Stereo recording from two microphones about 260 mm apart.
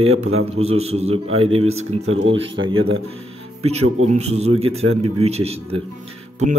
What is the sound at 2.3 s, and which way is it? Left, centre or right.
Speech, centre.